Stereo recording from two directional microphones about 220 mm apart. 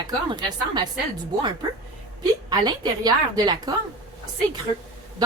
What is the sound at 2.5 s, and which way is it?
A woman's voice, 20° right (ahead or behind).